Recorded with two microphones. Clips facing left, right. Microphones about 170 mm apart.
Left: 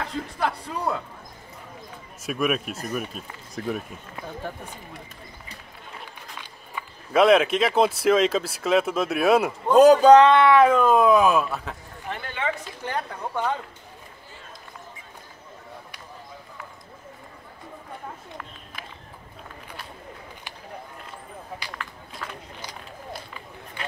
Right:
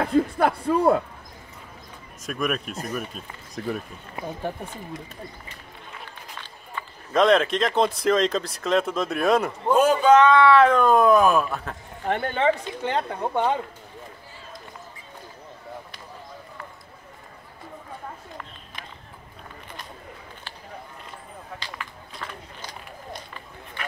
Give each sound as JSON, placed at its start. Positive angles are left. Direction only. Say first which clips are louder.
{"t": 0.0, "sound": "speech", "louder": "right 7 dB", "side_deg": -55}
{"t": 2.2, "sound": "speech", "louder": "left 2 dB", "side_deg": 5}
{"t": 6.7, "sound": "speech", "louder": "left 1 dB", "side_deg": 5}
{"t": 9.8, "sound": "speech", "louder": "left 5 dB", "side_deg": 35}
{"t": 10.5, "sound": "speech", "louder": "even", "side_deg": 10}
{"t": 12.1, "sound": "speech", "louder": "right 9 dB", "side_deg": -50}
{"t": 12.8, "sound": "a woman's voice", "louder": "right 4 dB", "side_deg": -25}
{"t": 21.7, "sound": "run", "louder": "even", "side_deg": 0}